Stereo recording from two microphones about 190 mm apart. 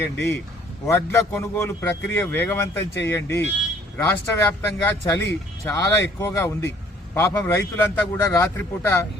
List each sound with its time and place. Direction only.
0.0 s speech: 10° left (ahead or behind)